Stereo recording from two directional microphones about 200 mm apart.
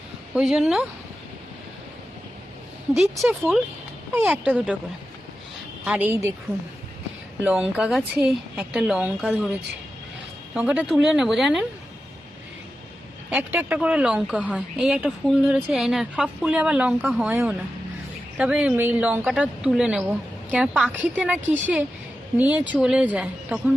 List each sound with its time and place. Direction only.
0.3 s a woman's voice: 5° right (ahead or behind)
2.9 s a woman's voice: centre (ahead or behind)
5.8 s a woman's voice: 5° right (ahead or behind)
7.4 s a woman's voice: 5° right (ahead or behind)
13.3 s a woman's voice: 10° right (ahead or behind)